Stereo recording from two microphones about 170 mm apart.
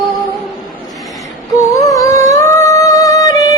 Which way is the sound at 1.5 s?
20° left (ahead or behind).